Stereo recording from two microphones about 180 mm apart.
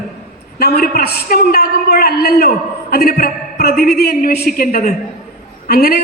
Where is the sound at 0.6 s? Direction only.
60° left (ahead or behind).